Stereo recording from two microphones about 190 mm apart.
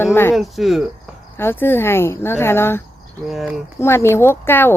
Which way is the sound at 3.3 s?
Centre (ahead or behind).